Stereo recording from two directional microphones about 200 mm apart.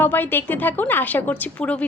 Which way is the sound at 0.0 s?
10° left (ahead or behind).